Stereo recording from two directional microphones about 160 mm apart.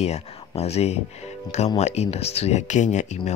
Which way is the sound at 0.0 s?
40° left (ahead or behind).